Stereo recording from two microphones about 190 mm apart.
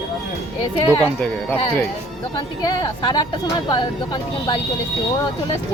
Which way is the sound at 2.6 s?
20° left (ahead or behind).